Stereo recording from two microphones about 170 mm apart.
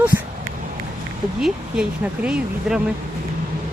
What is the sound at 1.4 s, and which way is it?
Speech, 5° right (ahead or behind).